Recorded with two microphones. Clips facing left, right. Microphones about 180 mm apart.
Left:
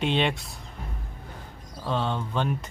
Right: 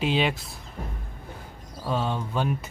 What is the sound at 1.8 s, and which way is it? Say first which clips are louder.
Speech: even; 5° right (ahead or behind).